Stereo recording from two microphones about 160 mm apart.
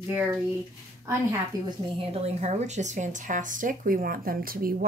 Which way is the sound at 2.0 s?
40° right (ahead or behind).